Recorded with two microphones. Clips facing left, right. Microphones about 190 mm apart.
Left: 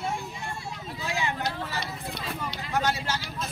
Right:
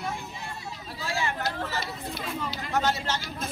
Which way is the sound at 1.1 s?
15° left (ahead or behind).